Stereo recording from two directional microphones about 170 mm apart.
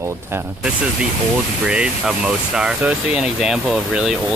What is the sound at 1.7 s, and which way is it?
Speech, 5° right (ahead or behind).